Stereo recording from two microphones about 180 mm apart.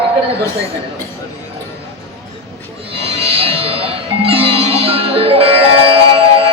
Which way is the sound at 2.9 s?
35° right (ahead or behind).